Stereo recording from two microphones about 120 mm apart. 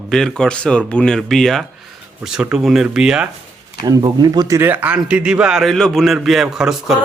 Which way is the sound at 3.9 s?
35° right (ahead or behind).